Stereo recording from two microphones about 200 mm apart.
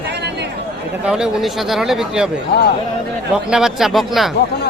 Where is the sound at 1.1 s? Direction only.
Centre (ahead or behind).